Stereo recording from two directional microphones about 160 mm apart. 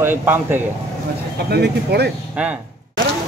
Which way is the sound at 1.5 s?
90° right.